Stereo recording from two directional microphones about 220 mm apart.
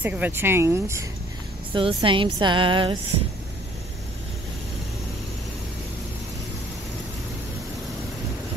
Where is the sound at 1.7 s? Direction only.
25° right (ahead or behind).